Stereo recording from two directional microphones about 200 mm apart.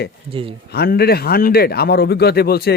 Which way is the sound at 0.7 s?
55° left (ahead or behind).